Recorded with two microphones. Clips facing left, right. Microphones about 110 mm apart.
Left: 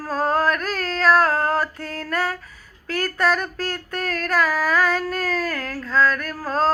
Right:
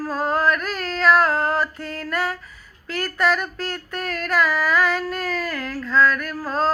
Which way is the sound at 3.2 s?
40° left (ahead or behind).